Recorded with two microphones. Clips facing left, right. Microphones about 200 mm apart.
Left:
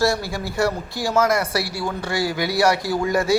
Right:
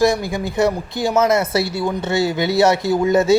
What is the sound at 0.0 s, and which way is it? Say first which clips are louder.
Speech: right 4 dB; 20° right (ahead or behind).